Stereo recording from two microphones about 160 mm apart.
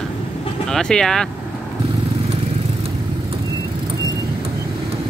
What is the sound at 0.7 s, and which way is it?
Speech, 5° left (ahead or behind).